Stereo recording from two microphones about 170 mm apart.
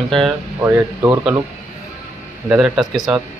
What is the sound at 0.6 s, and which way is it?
Speech, 10° right (ahead or behind).